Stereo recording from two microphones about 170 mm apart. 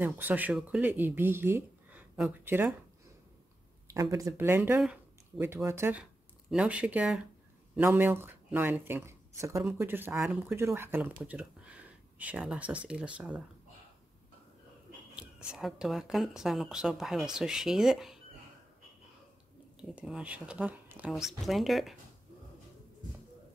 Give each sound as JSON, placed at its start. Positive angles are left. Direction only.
{"t": 0.0, "sound": "speech", "side_deg": -10}
{"t": 3.8, "sound": "speech", "side_deg": -20}
{"t": 15.1, "sound": "speech", "side_deg": -5}
{"t": 19.8, "sound": "speech", "side_deg": -5}